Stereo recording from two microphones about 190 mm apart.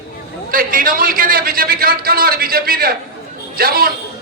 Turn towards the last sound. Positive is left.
turn(degrees=-50)  # may be behind; listen again after turning